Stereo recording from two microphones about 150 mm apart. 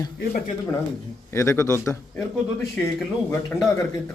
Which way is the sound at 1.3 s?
20° left (ahead or behind).